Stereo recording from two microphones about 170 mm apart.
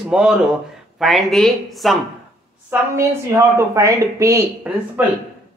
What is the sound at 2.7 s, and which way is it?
A woman's voice, 10° right (ahead or behind).